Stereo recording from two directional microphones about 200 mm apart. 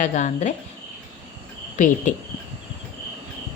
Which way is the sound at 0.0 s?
40° left (ahead or behind).